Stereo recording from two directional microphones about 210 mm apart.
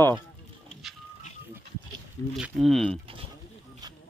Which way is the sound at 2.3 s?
Centre (ahead or behind).